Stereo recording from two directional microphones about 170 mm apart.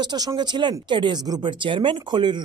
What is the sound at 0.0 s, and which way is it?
Speech, 25° right (ahead or behind).